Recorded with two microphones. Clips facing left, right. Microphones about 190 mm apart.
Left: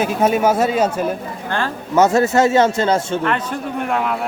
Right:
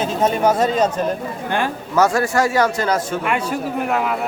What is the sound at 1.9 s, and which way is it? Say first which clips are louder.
A man's voice: left 4 dB; 20° left (ahead or behind).